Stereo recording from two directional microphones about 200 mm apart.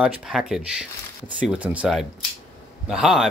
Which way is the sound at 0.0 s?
Centre (ahead or behind).